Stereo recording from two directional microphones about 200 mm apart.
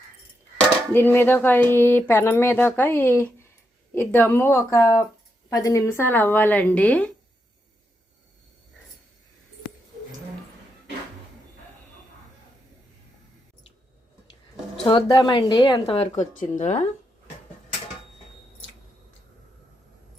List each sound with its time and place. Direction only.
0.9 s speech: 10° left (ahead or behind)
14.8 s speech: 25° left (ahead or behind)